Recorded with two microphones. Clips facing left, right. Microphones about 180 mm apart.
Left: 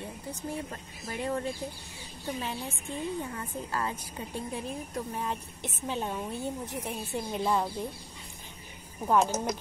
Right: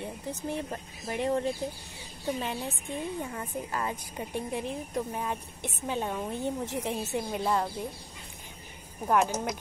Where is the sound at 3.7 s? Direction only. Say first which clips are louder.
Left 1 dB; 15° right (ahead or behind).